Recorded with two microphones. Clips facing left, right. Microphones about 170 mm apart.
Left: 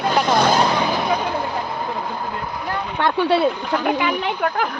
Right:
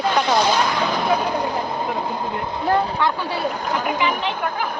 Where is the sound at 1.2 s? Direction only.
15° right (ahead or behind).